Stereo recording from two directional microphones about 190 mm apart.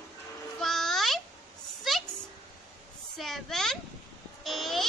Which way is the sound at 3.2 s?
Centre (ahead or behind).